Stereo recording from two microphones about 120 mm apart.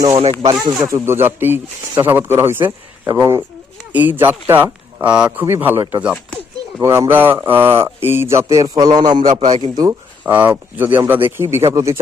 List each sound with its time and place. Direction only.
0.1 s speech: 55° right (ahead or behind)
0.4 s speech: 30° right (ahead or behind); by 6.1 s 10° right (ahead or behind)
6.7 s speech: 20° right (ahead or behind)
10.2 s speech: 15° right (ahead or behind)